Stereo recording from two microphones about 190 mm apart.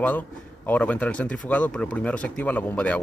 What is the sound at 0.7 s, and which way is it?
Speech, 10° left (ahead or behind).